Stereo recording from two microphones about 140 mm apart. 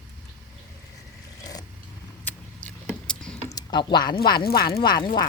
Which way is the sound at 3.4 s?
30° left (ahead or behind).